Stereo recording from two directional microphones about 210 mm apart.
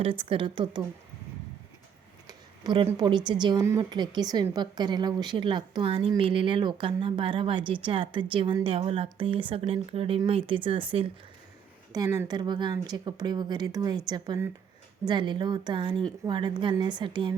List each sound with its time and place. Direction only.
0.0 s speech: 25° right (ahead or behind)
2.2 s speech: 20° right (ahead or behind)